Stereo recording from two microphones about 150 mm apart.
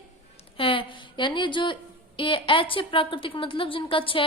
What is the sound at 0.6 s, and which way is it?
A woman's voice, 35° left (ahead or behind).